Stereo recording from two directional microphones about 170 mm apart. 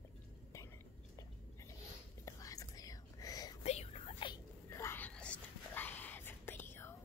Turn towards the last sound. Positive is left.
turn(degrees=15)  # may be behind; listen again after turning